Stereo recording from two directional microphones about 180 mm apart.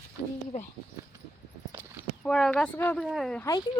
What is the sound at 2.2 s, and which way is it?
Speech, 5° left (ahead or behind).